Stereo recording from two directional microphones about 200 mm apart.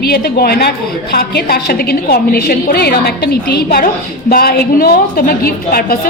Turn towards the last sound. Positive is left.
turn(degrees=45)  # may be behind; listen again after turning